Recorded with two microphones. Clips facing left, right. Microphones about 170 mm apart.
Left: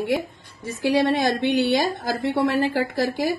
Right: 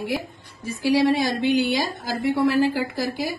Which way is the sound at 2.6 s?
65° left (ahead or behind).